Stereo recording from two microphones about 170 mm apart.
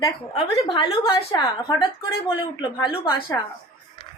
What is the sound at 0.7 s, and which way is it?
A woman's voice, 30° left (ahead or behind).